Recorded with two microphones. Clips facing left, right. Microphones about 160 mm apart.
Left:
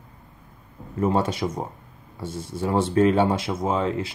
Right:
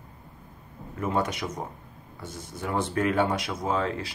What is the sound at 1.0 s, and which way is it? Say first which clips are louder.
Speech: left 5 dB; 30° left (ahead or behind).